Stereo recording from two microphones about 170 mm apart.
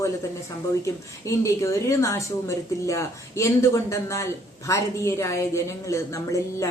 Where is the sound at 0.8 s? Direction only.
20° left (ahead or behind).